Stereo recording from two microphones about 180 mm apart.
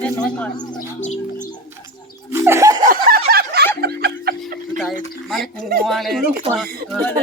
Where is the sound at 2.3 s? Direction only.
15° right (ahead or behind).